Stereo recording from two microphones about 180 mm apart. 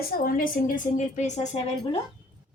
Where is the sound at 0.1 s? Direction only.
50° left (ahead or behind).